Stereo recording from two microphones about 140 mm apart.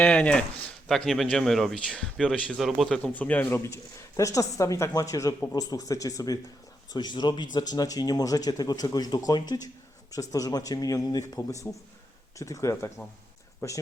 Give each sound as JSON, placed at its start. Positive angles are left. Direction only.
{"t": 0.0, "sound": "a man's voice", "side_deg": 10}
{"t": 11.6, "sound": "a man's voice", "side_deg": 10}
{"t": 12.4, "sound": "speech", "side_deg": 25}